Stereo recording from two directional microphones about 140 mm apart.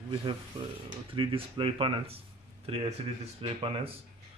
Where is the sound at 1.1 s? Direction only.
40° right (ahead or behind).